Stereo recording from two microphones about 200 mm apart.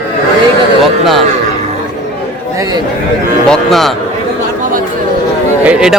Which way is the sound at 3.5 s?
Centre (ahead or behind).